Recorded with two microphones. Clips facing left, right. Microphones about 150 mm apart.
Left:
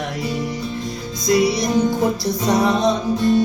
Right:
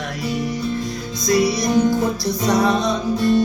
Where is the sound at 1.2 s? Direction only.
25° left (ahead or behind).